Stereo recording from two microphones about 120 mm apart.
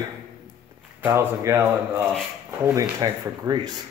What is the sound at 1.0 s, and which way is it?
Speech, 20° right (ahead or behind).